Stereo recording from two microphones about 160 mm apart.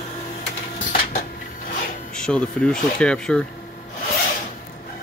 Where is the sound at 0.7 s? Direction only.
60° left (ahead or behind).